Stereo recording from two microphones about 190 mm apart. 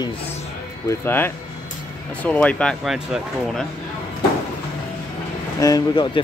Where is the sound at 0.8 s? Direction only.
10° left (ahead or behind).